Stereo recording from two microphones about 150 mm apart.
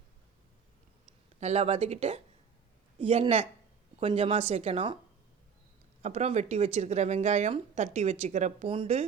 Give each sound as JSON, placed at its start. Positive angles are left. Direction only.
{"t": 1.4, "sound": "a woman's voice", "side_deg": -45}
{"t": 6.0, "sound": "speech", "side_deg": -50}
{"t": 8.6, "sound": "a woman's voice", "side_deg": -35}